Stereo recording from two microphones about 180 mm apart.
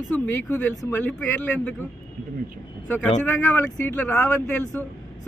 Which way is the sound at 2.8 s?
10° left (ahead or behind).